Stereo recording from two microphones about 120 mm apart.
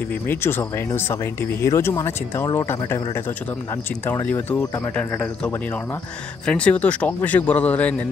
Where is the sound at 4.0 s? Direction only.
20° left (ahead or behind).